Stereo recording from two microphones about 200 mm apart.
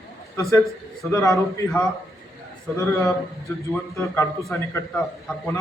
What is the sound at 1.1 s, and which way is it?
Speech, 15° left (ahead or behind).